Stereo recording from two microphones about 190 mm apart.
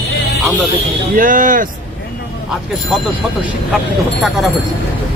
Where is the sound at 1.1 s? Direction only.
45° right (ahead or behind).